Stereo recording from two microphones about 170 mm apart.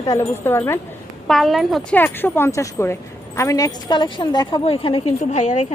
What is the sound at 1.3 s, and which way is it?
Speech, centre (ahead or behind).